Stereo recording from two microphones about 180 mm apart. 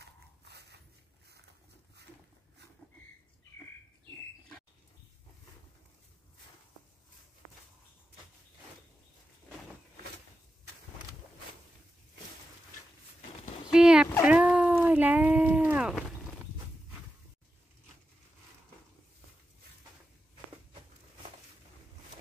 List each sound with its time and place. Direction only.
0.0 s dog: 65° right (ahead or behind)
13.7 s a sound: 5° right (ahead or behind)
14.2 s cat: 5° right (ahead or behind)